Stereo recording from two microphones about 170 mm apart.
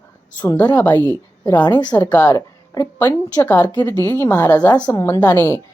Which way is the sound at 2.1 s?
15° left (ahead or behind).